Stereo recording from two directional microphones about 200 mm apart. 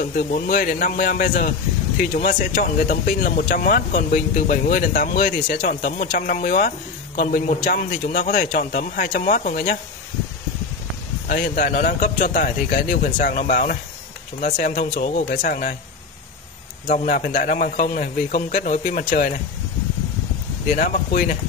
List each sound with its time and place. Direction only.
0.0 s speech: 45° left (ahead or behind)
11.2 s a man's voice: 45° left (ahead or behind)
16.8 s a man's voice: 40° left (ahead or behind)
20.6 s speech: 40° left (ahead or behind)